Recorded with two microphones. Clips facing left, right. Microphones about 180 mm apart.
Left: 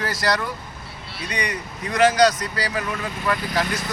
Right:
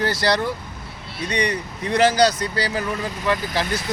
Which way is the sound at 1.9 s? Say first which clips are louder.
Even; 30° right (ahead or behind).